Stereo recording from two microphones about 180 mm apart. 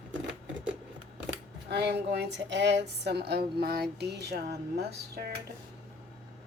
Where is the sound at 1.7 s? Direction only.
70° right (ahead or behind).